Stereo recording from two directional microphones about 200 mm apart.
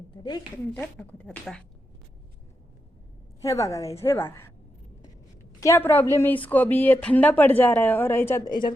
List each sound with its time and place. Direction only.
0.2 s a woman's voice: 20° left (ahead or behind)
0.7 s a woman's voice: 10° left (ahead or behind)
3.4 s a woman's voice: 15° left (ahead or behind)
5.5 s a woman's voice: 15° left (ahead or behind)